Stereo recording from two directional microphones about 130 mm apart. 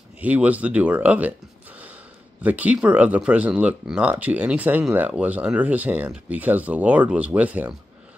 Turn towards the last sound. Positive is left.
turn(degrees=-10)  # may be behind; listen again after turning